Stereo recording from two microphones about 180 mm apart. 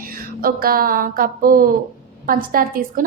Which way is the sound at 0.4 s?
55° right (ahead or behind).